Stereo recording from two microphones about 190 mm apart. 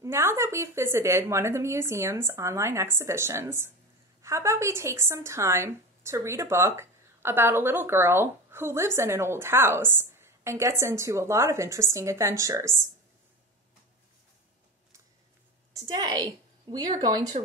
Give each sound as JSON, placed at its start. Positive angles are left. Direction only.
{"t": 0.0, "sound": "a woman's voice", "side_deg": -15}
{"t": 15.7, "sound": "a woman's voice", "side_deg": -20}